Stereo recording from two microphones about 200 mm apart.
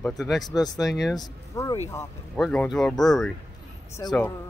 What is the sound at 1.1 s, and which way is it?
Speech, 15° left (ahead or behind).